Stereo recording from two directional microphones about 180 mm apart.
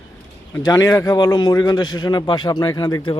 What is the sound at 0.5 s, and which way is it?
A man's voice, 20° left (ahead or behind).